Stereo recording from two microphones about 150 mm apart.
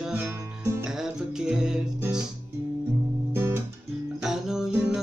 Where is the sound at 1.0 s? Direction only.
5° right (ahead or behind).